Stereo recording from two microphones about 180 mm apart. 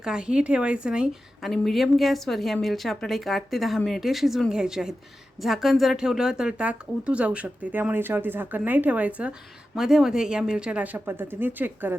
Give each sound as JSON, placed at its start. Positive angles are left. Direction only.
{"t": 0.0, "sound": "a woman's voice", "side_deg": -5}